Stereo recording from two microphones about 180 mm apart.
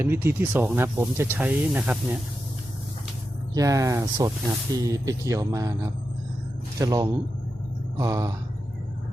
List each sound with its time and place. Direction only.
0.0 s speech: 15° right (ahead or behind)
3.5 s speech: 20° right (ahead or behind)